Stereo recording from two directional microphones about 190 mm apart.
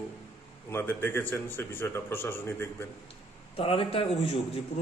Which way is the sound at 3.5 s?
30° left (ahead or behind).